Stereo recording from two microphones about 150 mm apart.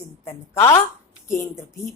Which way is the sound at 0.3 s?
20° left (ahead or behind).